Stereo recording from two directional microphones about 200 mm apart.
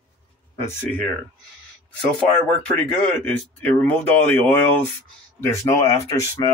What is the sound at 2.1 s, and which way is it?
Speech, 5° left (ahead or behind).